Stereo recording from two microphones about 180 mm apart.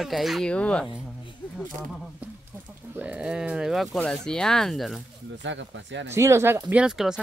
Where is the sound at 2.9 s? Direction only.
5° right (ahead or behind).